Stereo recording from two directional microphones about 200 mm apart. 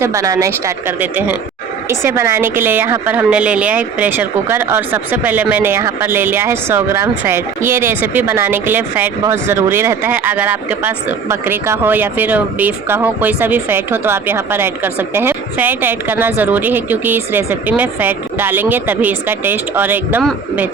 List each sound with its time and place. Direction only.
0.0 s a woman's voice: 15° right (ahead or behind)